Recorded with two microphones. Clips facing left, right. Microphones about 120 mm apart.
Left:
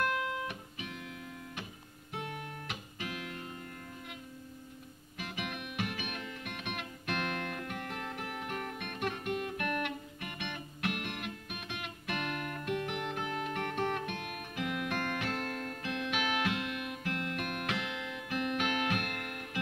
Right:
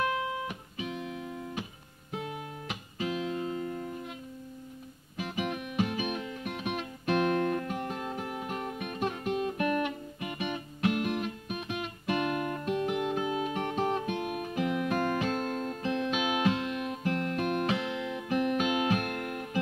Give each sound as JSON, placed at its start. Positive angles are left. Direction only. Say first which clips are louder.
{"t": 0.0, "sound": "music", "louder": "right 3 dB", "side_deg": -20}
{"t": 5.5, "sound": "music", "louder": "right 8 dB", "side_deg": -30}
{"t": 7.9, "sound": "music", "louder": "right 5 dB", "side_deg": -15}
{"t": 8.9, "sound": "music", "louder": "right 4 dB", "side_deg": -25}
{"t": 10.9, "sound": "music", "louder": "right 9 dB", "side_deg": -35}